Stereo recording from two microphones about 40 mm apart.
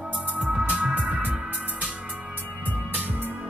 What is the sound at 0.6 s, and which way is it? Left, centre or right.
Music, right.